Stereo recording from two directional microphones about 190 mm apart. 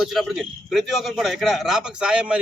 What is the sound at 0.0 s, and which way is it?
A man's voice, centre (ahead or behind).